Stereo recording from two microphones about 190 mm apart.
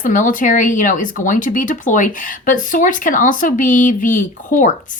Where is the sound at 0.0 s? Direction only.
45° left (ahead or behind).